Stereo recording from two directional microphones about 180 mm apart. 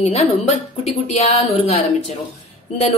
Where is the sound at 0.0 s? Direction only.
35° left (ahead or behind).